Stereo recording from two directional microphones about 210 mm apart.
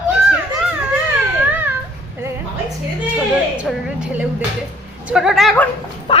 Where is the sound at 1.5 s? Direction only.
10° right (ahead or behind).